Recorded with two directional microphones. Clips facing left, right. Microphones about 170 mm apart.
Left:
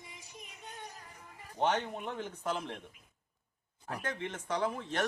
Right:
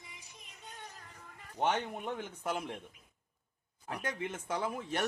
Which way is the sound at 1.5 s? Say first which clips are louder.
Left 1 dB; 10° right (ahead or behind).